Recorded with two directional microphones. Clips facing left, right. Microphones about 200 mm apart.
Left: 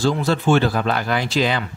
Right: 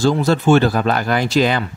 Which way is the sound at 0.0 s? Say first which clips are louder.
Right 4 dB; 40° right (ahead or behind).